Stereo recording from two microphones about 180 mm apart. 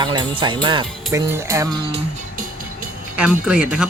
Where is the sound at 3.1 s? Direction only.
5° right (ahead or behind).